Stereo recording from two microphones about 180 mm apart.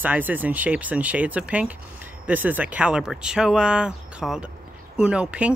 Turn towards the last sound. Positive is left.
turn(degrees=-5)  # may be behind; listen again after turning